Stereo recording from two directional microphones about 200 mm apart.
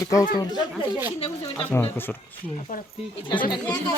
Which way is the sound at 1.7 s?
10° left (ahead or behind).